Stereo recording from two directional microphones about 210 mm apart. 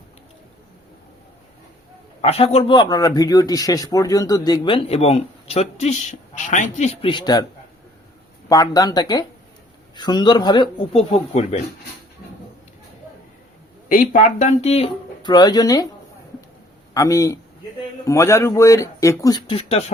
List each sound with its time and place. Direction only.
2.2 s a man's voice: 30° left (ahead or behind)
8.4 s a man's voice: 15° left (ahead or behind)
13.8 s speech: 40° left (ahead or behind); by 15.9 s 15° left (ahead or behind)
16.9 s speech: 15° left (ahead or behind)